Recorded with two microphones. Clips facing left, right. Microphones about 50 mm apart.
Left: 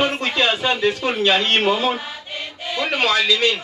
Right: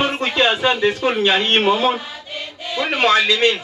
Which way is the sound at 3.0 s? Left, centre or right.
Right.